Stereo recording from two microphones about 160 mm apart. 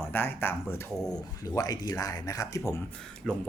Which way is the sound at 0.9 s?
5° left (ahead or behind).